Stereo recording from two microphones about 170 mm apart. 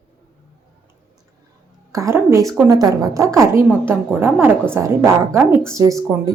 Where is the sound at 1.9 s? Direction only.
20° right (ahead or behind).